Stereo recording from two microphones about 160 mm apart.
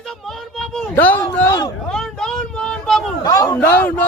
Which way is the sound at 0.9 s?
15° left (ahead or behind).